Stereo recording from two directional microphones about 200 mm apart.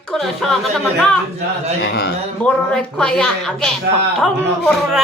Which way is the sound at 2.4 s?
5° left (ahead or behind).